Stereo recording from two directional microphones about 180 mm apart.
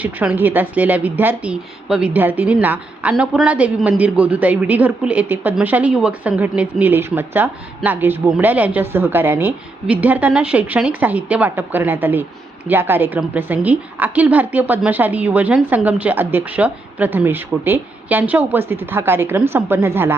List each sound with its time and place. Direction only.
0.0 s a woman's voice: 10° right (ahead or behind)